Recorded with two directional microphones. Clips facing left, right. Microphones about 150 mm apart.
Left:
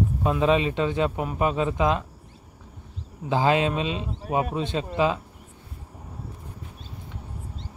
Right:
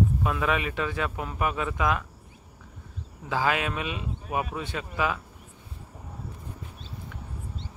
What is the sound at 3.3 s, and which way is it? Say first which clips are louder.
A man's voice: left 5 dB; 25° left (ahead or behind).